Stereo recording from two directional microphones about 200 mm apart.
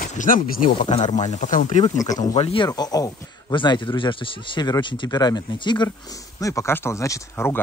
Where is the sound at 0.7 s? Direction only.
25° left (ahead or behind).